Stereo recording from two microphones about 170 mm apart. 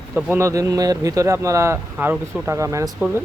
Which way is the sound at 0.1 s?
10° right (ahead or behind).